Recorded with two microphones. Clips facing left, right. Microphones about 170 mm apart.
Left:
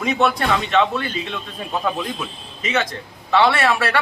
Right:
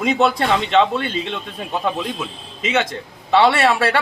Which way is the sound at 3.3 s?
30° right (ahead or behind).